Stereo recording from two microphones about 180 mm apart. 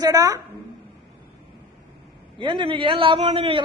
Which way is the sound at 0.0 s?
20° right (ahead or behind).